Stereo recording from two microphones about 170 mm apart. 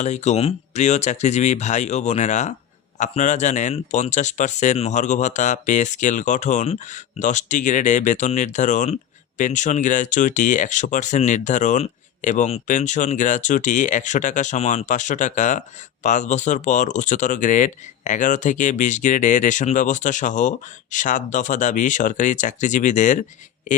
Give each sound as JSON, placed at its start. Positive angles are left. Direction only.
{"t": 0.0, "sound": "speech", "side_deg": 40}